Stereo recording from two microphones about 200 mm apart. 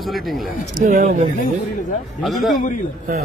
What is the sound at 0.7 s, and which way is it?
Speech, 45° right (ahead or behind).